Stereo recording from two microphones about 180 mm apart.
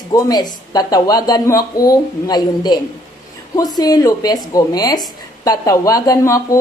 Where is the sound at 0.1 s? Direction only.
20° left (ahead or behind).